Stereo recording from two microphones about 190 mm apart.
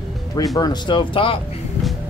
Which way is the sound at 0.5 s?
20° left (ahead or behind).